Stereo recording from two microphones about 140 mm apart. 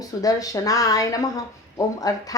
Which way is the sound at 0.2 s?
25° left (ahead or behind).